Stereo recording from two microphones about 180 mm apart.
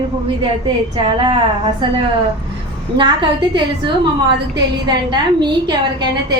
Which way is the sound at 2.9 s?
25° right (ahead or behind).